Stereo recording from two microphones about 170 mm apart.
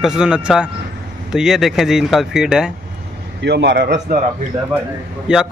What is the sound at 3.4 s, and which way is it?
Speech, 80° right.